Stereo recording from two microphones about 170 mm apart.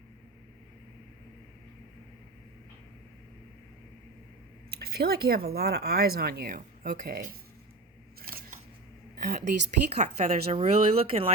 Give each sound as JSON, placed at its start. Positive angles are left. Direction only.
{"t": 4.7, "sound": "speech", "side_deg": -65}
{"t": 8.2, "sound": "scissors", "side_deg": -60}
{"t": 9.2, "sound": "a woman's voice", "side_deg": -50}
{"t": 10.0, "sound": "speech", "side_deg": -40}